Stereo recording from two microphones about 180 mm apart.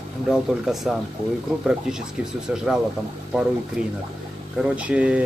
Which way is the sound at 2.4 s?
Centre (ahead or behind).